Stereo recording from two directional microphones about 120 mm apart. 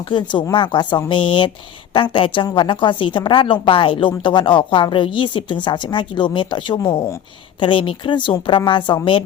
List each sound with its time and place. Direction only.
0.1 s a woman's voice: 40° left (ahead or behind)